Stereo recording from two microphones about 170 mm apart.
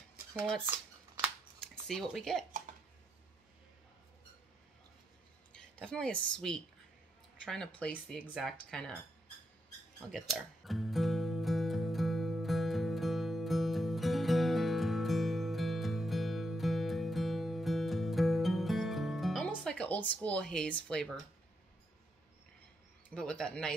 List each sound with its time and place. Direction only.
1.9 s speech: centre (ahead or behind)
5.5 s a woman's voice: 5° left (ahead or behind)
10.1 s music: centre (ahead or behind)
19.4 s speech: 5° left (ahead or behind)
23.0 s speech: 5° left (ahead or behind)